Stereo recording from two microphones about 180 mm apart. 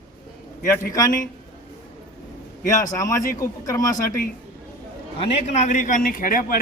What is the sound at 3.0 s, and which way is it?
Speech, 20° left (ahead or behind).